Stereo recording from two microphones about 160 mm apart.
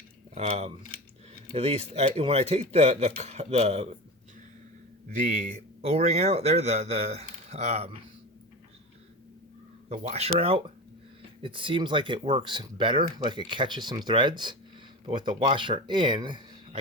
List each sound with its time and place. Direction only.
0.3 s a man's voice: 40° right (ahead or behind)
5.1 s speech: 50° right (ahead or behind)
9.9 s a man's voice: 50° right (ahead or behind); by 16.8 s 30° right (ahead or behind)